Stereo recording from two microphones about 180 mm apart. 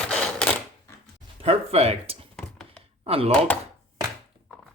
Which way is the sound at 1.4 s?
30° right (ahead or behind).